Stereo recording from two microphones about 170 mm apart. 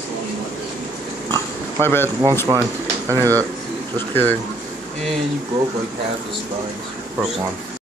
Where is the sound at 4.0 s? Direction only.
10° left (ahead or behind).